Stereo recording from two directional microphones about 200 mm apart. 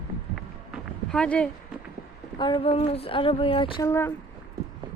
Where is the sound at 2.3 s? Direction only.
25° left (ahead or behind).